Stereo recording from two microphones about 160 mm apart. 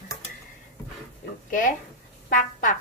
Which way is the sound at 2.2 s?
60° left (ahead or behind).